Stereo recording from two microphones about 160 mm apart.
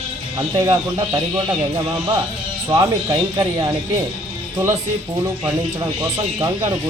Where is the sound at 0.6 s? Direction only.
25° right (ahead or behind).